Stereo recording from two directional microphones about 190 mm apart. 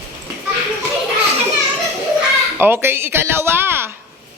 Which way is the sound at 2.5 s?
10° right (ahead or behind).